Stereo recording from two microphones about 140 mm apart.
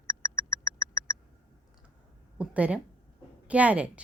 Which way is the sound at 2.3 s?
10° right (ahead or behind).